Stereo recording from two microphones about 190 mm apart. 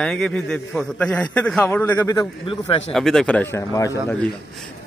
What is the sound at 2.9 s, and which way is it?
Speech, 5° left (ahead or behind).